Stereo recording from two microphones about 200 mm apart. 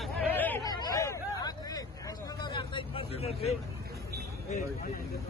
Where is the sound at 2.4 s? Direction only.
25° left (ahead or behind).